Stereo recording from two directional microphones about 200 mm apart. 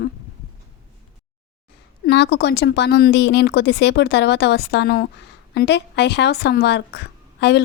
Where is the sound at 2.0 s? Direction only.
55° left (ahead or behind).